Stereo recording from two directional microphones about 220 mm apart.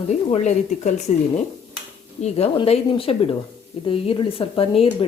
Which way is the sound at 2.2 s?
30° left (ahead or behind).